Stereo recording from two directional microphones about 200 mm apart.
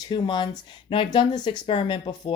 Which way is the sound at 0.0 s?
20° left (ahead or behind).